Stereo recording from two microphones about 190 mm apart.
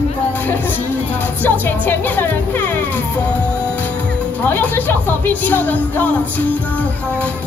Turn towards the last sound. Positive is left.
turn(degrees=10)  # may be behind; listen again after turning